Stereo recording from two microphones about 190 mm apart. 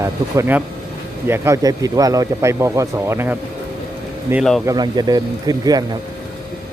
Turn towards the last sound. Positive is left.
turn(degrees=-20)  # may be behind; listen again after turning